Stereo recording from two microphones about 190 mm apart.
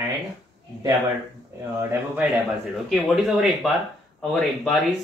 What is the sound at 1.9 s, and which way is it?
A man's voice, 10° right (ahead or behind).